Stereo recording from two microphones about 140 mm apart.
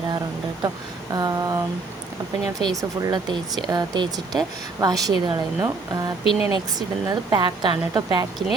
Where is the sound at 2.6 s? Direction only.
30° right (ahead or behind).